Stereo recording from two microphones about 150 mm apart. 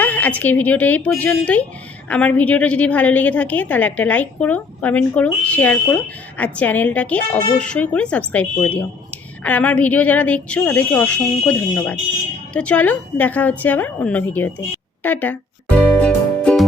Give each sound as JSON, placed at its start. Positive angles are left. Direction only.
{"t": 0.0, "sound": "a woman's voice", "side_deg": 10}
{"t": 15.9, "sound": "music", "side_deg": 10}